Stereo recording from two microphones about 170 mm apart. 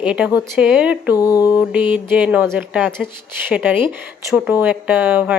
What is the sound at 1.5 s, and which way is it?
Speech, 10° right (ahead or behind).